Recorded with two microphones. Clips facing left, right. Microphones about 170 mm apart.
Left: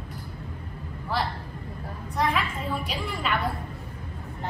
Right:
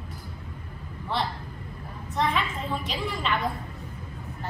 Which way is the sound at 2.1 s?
Centre (ahead or behind).